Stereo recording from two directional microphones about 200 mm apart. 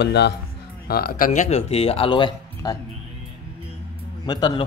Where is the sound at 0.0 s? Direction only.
60° left (ahead or behind); by 2.8 s 20° left (ahead or behind).